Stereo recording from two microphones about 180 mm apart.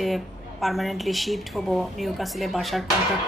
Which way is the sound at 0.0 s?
Centre (ahead or behind).